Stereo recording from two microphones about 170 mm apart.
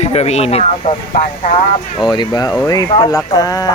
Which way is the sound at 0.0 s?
40° left (ahead or behind).